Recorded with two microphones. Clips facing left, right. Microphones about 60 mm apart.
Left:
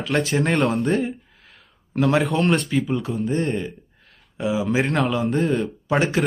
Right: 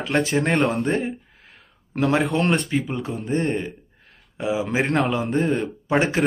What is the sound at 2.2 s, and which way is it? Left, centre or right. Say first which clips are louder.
Speech: left 1 dB; centre.